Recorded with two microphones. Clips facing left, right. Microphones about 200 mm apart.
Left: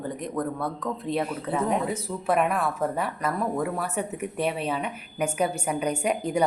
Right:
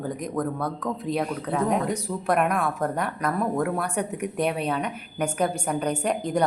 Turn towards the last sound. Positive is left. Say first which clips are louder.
# even
turn(degrees=10)  # may be behind; listen again after turning